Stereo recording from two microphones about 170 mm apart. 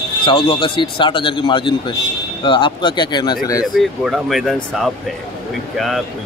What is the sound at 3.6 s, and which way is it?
Speech, centre (ahead or behind).